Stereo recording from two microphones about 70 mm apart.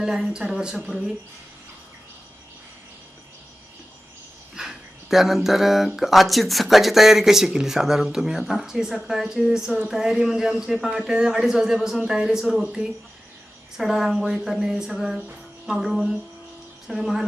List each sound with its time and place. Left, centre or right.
0.0 s speech: centre
4.5 s a sound: centre
6.0 s speech: centre